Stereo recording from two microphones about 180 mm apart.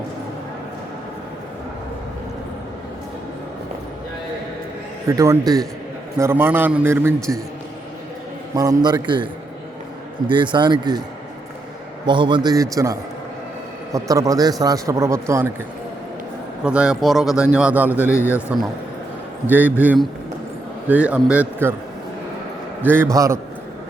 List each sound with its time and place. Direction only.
5.0 s a man's voice: 15° right (ahead or behind)
8.5 s a man's voice: 20° right (ahead or behind)
12.0 s a man's voice: 25° right (ahead or behind)
16.6 s a man's voice: 5° right (ahead or behind)
18.2 s a man's voice: 15° left (ahead or behind)
19.5 s a man's voice: 10° right (ahead or behind)
22.8 s a man's voice: 10° right (ahead or behind)